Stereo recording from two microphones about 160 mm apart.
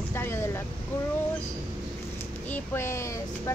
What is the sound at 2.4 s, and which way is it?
Child singing, 15° left (ahead or behind).